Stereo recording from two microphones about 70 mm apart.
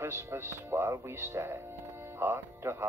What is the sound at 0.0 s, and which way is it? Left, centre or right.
Speech, right.